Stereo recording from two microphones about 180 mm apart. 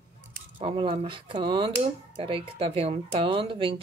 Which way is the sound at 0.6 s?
30° right (ahead or behind).